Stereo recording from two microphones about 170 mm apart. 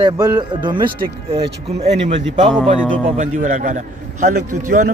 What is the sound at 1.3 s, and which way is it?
Speech, 35° right (ahead or behind).